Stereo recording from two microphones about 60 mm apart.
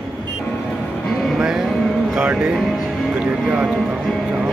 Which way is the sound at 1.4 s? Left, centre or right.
Centre.